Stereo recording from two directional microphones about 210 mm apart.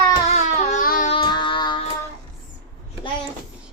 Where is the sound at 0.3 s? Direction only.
30° left (ahead or behind).